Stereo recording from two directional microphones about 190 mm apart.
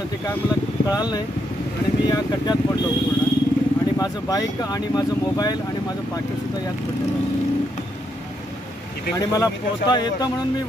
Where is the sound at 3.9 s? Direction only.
20° left (ahead or behind).